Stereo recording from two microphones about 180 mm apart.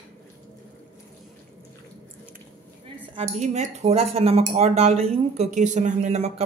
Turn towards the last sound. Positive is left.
turn(degrees=-35)  # may be behind; listen again after turning